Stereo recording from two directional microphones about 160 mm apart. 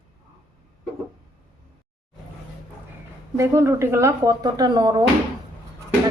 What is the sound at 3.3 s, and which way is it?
Speech, 15° right (ahead or behind).